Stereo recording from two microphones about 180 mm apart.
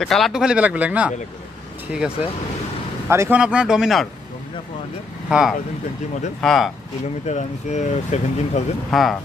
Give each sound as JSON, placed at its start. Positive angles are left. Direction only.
{"t": 0.0, "sound": "speech", "side_deg": 0}
{"t": 5.3, "sound": "speech", "side_deg": 0}
{"t": 7.2, "sound": "speech", "side_deg": 40}
{"t": 8.9, "sound": "speech", "side_deg": 0}